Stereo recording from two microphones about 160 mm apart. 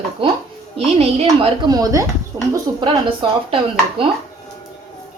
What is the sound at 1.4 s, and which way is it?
A woman's voice, 25° right (ahead or behind).